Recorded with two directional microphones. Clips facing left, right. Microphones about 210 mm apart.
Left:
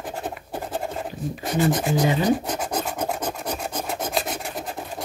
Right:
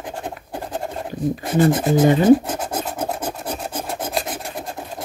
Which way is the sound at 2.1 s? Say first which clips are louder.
Right 10 dB; 50° right (ahead or behind).